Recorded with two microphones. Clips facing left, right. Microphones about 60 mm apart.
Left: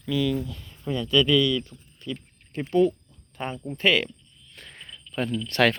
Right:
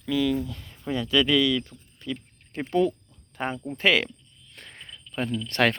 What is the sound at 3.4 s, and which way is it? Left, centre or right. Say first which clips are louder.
Speech: right 1 dB; right.